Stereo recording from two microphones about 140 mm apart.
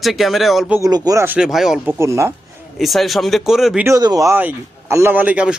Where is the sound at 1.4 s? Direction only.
5° right (ahead or behind).